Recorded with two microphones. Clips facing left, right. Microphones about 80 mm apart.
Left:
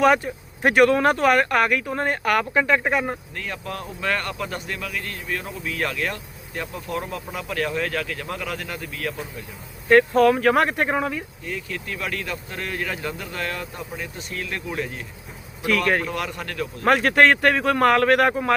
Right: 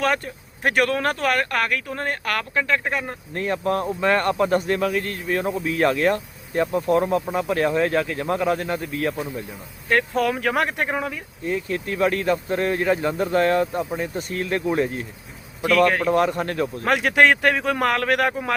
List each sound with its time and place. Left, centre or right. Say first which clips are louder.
0.0 s speech: left 5 dB; centre
3.3 s speech: right 9 dB; right
9.9 s speech: left 5 dB; centre
11.4 s speech: right 10 dB; right
15.6 s speech: right 4 dB; centre
16.0 s speech: right 9 dB; right
16.8 s speech: left 1 dB; centre